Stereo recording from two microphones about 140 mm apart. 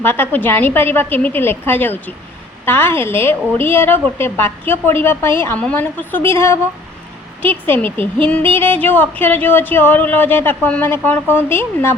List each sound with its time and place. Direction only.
0.0 s a woman's voice: 15° left (ahead or behind)